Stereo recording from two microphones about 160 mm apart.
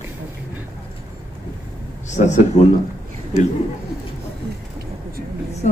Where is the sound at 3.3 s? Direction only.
90° right.